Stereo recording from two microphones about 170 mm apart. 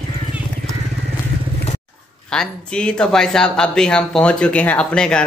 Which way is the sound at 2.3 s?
5° left (ahead or behind).